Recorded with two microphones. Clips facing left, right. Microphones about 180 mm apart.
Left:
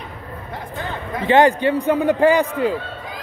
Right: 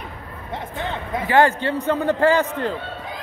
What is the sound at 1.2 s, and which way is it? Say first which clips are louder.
A man's voice: left 4 dB; 20° left (ahead or behind).